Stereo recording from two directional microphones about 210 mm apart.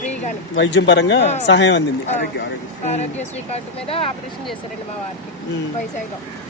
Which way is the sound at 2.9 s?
30° left (ahead or behind).